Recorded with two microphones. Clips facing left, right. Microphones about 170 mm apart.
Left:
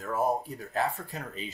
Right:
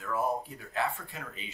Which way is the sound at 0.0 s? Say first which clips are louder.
Left 3 dB; 40° left (ahead or behind).